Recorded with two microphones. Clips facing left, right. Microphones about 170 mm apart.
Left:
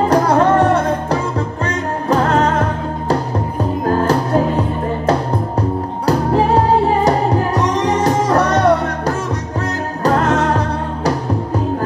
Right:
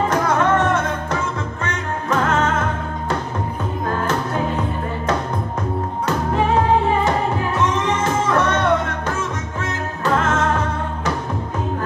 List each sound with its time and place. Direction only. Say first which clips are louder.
0.0 s music: left 5 dB; 35° left (ahead or behind)